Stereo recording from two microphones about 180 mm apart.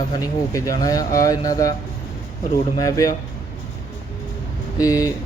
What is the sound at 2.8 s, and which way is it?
Speech, 20° left (ahead or behind).